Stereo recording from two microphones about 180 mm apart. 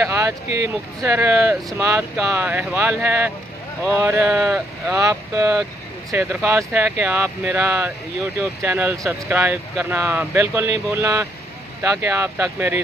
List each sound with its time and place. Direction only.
0.0 s speech: 15° right (ahead or behind)
4.9 s speech: 15° right (ahead or behind)